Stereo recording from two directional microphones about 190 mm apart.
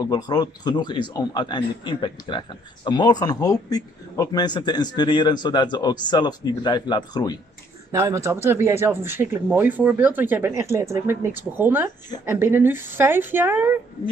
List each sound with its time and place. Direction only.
0.0 s a man's voice: 20° left (ahead or behind)
7.9 s speech: 15° right (ahead or behind)